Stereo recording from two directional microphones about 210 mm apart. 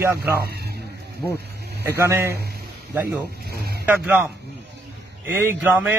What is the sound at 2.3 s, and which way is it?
A man's voice, 50° right (ahead or behind).